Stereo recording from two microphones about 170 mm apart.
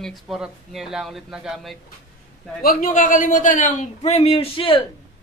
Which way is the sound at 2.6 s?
60° left (ahead or behind).